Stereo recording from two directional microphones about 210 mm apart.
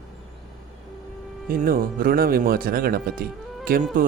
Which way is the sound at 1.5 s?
45° right (ahead or behind).